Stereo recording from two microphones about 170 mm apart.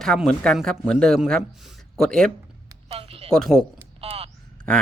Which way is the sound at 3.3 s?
5° left (ahead or behind).